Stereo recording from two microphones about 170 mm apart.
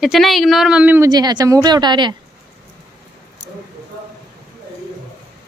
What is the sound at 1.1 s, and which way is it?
A woman's voice, 25° right (ahead or behind).